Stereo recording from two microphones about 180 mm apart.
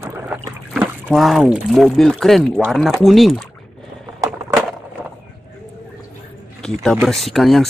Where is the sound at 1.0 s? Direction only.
Centre (ahead or behind).